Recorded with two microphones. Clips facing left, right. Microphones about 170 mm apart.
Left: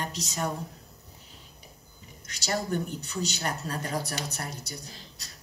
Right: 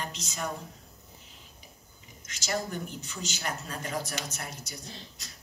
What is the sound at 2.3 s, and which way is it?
Speech, 35° left (ahead or behind).